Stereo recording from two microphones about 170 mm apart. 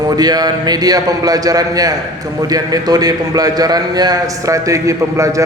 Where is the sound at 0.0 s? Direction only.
25° right (ahead or behind).